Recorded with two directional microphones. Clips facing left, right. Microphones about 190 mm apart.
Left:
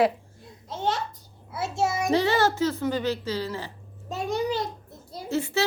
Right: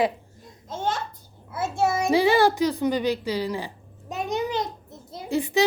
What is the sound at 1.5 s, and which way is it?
Child singing, 50° right (ahead or behind).